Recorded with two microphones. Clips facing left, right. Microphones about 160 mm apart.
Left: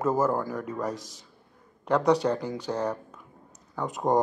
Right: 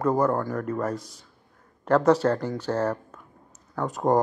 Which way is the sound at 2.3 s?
15° left (ahead or behind).